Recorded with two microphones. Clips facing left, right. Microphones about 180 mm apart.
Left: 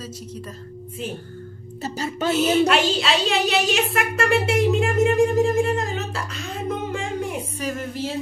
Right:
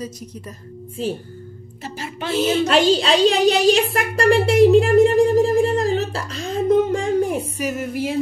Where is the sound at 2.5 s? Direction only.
35° right (ahead or behind).